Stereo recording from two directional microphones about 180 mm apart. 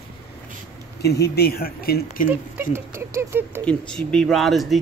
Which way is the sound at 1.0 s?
65° left (ahead or behind).